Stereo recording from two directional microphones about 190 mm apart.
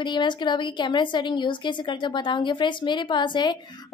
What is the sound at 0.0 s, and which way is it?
A woman's voice, 25° left (ahead or behind).